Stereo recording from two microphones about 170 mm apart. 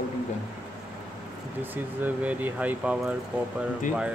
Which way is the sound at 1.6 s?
10° right (ahead or behind).